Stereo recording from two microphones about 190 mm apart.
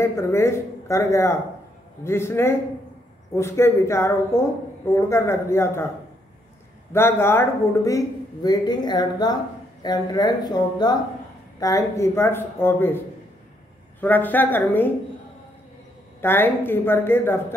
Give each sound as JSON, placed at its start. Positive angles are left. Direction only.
{"t": 0.0, "sound": "a woman's voice", "side_deg": 15}
{"t": 6.9, "sound": "a woman's voice", "side_deg": 10}
{"t": 14.0, "sound": "a woman's voice", "side_deg": 10}
{"t": 16.2, "sound": "a woman's voice", "side_deg": 10}